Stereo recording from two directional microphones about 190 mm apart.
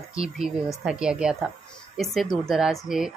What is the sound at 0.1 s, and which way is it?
Speech, 5° right (ahead or behind).